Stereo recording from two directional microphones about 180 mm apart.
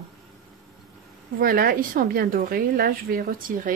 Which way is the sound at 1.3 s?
55° right (ahead or behind).